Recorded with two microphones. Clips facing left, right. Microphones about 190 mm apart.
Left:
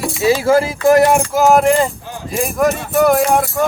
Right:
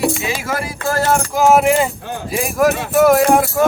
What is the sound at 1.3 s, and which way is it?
Speech, centre (ahead or behind).